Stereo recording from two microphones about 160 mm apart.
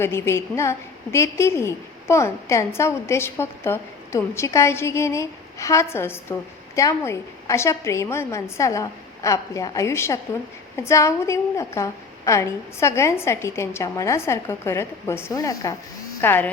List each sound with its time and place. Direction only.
0.0 s a woman's voice: 15° left (ahead or behind)